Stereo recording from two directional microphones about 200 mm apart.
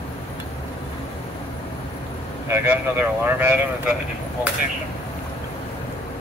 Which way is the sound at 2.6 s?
10° right (ahead or behind).